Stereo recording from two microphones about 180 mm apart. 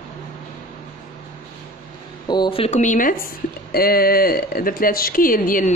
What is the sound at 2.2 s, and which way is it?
Speech, 25° left (ahead or behind).